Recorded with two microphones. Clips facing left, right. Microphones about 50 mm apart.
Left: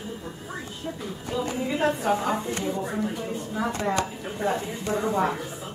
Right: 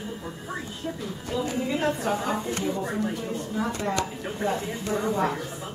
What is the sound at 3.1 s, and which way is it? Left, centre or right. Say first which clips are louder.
A woman's voice: even; centre.